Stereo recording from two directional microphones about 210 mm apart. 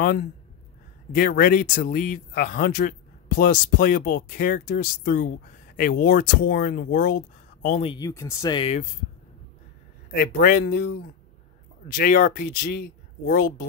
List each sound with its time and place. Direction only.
0.0 s speech: 45° left (ahead or behind)
7.9 s speech: 15° left (ahead or behind)
10.1 s speech: 45° left (ahead or behind)
12.0 s speech: 40° left (ahead or behind)